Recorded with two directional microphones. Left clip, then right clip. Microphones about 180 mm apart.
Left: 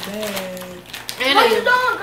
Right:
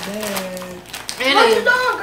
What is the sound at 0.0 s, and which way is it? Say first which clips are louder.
Speech: right 1 dB; 30° right (ahead or behind).